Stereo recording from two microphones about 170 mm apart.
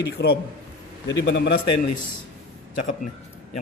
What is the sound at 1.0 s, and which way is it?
Speech, 90° left.